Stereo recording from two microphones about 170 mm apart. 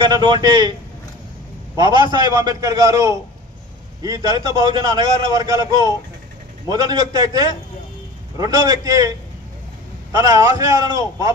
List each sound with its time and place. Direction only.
0.0 s a man's voice: 25° right (ahead or behind)
1.8 s a man's voice: 25° right (ahead or behind)
6.7 s a man's voice: 20° right (ahead or behind)
10.1 s a man's voice: 20° right (ahead or behind)